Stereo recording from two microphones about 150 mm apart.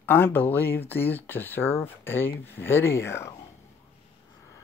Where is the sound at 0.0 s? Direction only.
15° left (ahead or behind).